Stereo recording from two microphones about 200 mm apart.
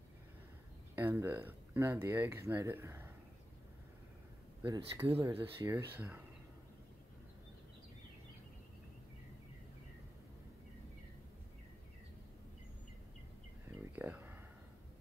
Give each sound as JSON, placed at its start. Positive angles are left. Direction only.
{"t": 0.9, "sound": "speech", "side_deg": -10}
{"t": 4.6, "sound": "speech", "side_deg": -20}
{"t": 13.9, "sound": "a sound", "side_deg": -10}